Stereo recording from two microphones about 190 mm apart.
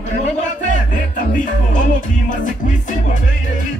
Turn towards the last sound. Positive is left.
turn(degrees=45)  # may be behind; listen again after turning